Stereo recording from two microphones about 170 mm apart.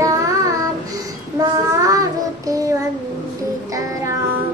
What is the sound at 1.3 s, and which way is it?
Child singing, 20° right (ahead or behind).